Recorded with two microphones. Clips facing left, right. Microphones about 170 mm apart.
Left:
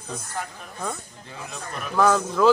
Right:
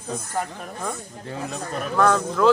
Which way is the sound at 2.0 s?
5° left (ahead or behind).